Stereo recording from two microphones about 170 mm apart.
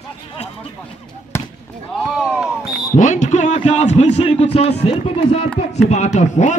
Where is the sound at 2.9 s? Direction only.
45° left (ahead or behind).